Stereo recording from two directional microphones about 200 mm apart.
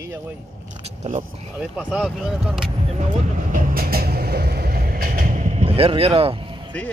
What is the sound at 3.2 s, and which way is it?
Vehicle, 45° right (ahead or behind).